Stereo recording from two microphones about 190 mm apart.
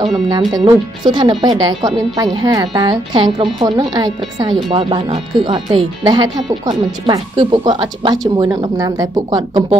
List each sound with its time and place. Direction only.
0.7 s a woman's voice: 25° right (ahead or behind)